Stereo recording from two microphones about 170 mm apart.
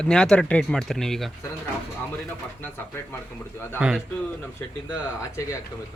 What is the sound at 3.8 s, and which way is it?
Speech, 5° right (ahead or behind).